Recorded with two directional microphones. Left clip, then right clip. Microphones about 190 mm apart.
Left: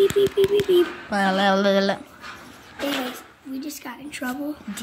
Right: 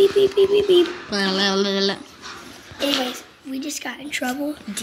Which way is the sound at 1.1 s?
35° left (ahead or behind).